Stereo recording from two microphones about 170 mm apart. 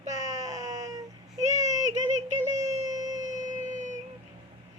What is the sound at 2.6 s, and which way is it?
Music, 45° right (ahead or behind).